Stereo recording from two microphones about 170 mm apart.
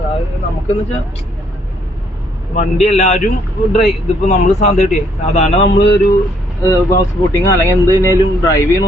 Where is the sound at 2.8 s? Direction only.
45° left (ahead or behind).